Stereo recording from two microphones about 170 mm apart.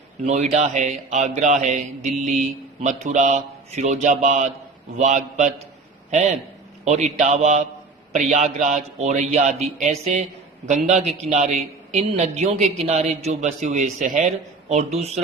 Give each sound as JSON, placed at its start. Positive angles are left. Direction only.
{"t": 0.3, "sound": "a man's voice", "side_deg": -40}